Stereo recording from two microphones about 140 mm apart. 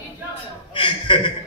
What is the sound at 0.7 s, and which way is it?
Chuckle, 35° left (ahead or behind).